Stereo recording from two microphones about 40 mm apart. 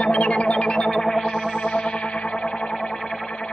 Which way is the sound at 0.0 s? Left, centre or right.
Left.